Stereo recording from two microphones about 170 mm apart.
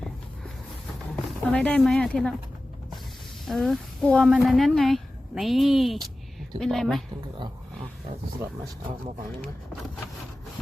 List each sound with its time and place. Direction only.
1.5 s speech: 5° left (ahead or behind)
3.4 s speech: centre (ahead or behind)
8.4 s speech: 20° right (ahead or behind)